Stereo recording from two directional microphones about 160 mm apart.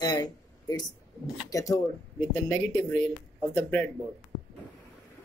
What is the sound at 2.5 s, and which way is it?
Speech, 5° left (ahead or behind).